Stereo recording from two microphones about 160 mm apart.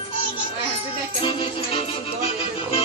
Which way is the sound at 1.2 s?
35° left (ahead or behind).